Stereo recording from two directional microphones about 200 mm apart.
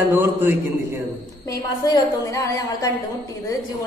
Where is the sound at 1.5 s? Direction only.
15° left (ahead or behind).